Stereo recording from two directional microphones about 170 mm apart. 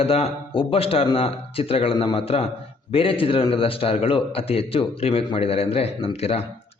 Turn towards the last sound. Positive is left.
turn(degrees=35)  # may be behind; listen again after turning